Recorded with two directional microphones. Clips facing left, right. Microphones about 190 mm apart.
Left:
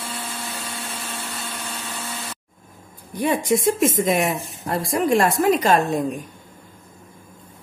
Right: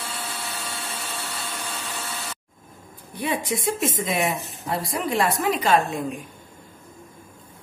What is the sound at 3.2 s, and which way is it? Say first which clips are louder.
Speech: left 6 dB; 45° left (ahead or behind).